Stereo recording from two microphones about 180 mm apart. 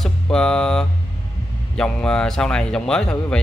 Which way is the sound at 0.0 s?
5° left (ahead or behind).